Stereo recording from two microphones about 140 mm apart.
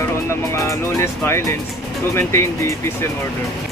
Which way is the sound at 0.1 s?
20° left (ahead or behind).